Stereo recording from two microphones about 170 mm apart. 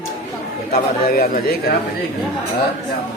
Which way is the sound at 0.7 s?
60° left (ahead or behind).